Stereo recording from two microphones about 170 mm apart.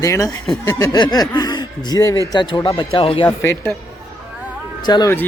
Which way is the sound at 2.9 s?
35° left (ahead or behind).